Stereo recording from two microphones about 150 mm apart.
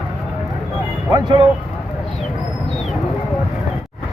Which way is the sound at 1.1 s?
25° right (ahead or behind).